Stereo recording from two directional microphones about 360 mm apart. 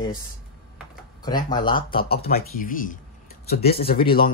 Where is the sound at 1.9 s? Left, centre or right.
Left.